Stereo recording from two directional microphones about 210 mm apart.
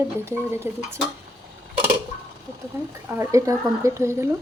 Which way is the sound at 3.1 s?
15° right (ahead or behind).